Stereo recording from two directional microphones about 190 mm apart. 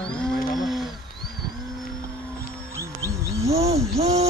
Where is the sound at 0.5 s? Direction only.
Centre (ahead or behind).